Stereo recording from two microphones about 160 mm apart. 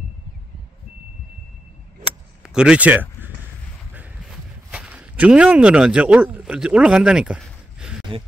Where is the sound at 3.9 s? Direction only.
10° right (ahead or behind).